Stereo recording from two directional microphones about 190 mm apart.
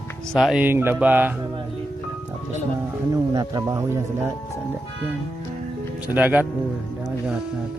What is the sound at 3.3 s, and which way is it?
Speech, 15° right (ahead or behind).